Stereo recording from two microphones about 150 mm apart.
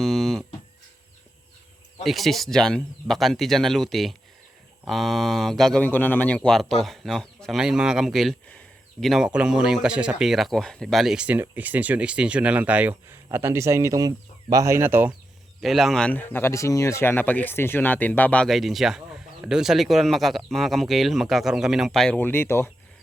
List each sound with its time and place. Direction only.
0.0 s a sound: centre (ahead or behind)
2.0 s speech: centre (ahead or behind)
15.6 s speech: centre (ahead or behind); by 22.7 s 15° left (ahead or behind)